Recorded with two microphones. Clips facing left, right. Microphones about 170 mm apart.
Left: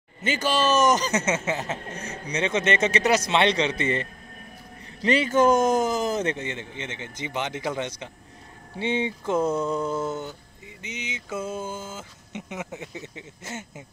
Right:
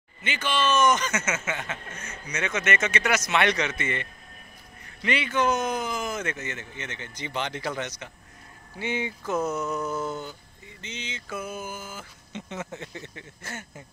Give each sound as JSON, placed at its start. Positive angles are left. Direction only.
{"t": 0.2, "sound": "a man's voice", "side_deg": 40}
{"t": 6.4, "sound": "speech", "side_deg": 20}